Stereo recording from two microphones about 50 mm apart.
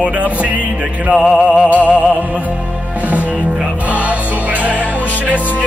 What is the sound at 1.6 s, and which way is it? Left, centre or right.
Music, left.